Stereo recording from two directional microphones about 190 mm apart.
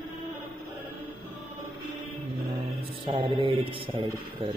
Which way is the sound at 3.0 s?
25° right (ahead or behind).